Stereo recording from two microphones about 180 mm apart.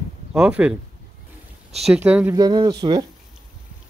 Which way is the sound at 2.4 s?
20° right (ahead or behind).